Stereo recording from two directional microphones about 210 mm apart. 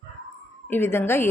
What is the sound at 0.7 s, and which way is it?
Speech, 10° left (ahead or behind).